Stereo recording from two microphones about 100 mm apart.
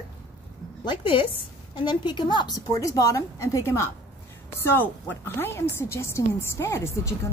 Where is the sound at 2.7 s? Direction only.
35° left (ahead or behind).